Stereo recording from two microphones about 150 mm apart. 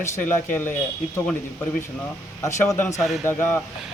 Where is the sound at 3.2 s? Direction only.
15° left (ahead or behind).